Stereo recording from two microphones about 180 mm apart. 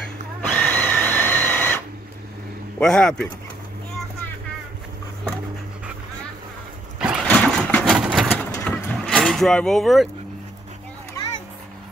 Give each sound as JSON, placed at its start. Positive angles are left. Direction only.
{"t": 0.5, "sound": "drill", "side_deg": 10}
{"t": 2.8, "sound": "speech", "side_deg": 5}
{"t": 7.0, "sound": "vehicle", "side_deg": -5}
{"t": 7.2, "sound": "a sound", "side_deg": 5}
{"t": 8.5, "sound": "vehicle", "side_deg": 10}
{"t": 11.2, "sound": "a sound", "side_deg": 15}